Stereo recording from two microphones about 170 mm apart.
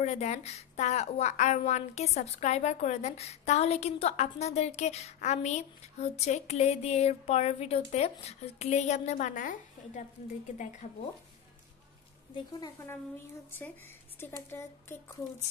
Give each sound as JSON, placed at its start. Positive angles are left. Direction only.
{"t": 0.0, "sound": "a woman's voice", "side_deg": 40}
{"t": 12.4, "sound": "a woman's voice", "side_deg": 25}